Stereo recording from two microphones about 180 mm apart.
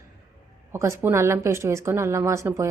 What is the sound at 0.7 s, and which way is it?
A woman's voice, 15° right (ahead or behind).